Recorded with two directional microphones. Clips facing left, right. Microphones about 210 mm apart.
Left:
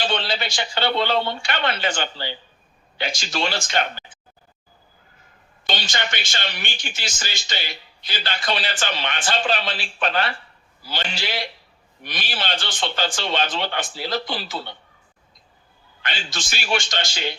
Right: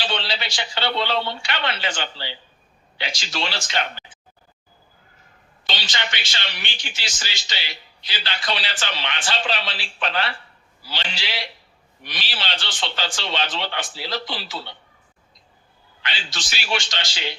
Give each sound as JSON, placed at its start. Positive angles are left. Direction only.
{"t": 0.0, "sound": "speech", "side_deg": 50}
{"t": 5.6, "sound": "speech", "side_deg": 50}
{"t": 16.0, "sound": "speech", "side_deg": 50}